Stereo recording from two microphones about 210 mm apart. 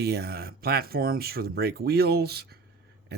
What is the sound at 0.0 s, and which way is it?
Speech, 50° right (ahead or behind).